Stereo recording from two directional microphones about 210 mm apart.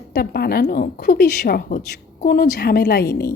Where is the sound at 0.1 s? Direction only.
45° left (ahead or behind).